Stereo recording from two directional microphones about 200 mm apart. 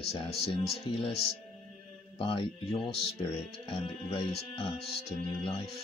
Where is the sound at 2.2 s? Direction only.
25° left (ahead or behind).